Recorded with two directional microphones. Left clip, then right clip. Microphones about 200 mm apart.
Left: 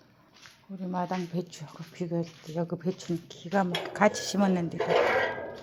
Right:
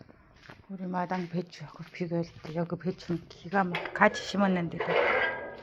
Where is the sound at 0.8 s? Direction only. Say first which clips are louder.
Even; 5° left (ahead or behind).